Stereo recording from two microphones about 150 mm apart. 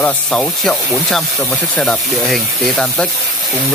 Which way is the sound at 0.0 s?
5° left (ahead or behind).